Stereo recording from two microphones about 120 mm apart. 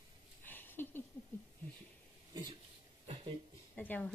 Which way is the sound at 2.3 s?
40° right (ahead or behind).